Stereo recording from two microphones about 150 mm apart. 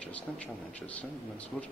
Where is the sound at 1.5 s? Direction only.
10° left (ahead or behind).